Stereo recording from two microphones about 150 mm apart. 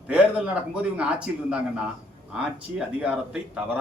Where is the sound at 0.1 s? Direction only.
10° right (ahead or behind).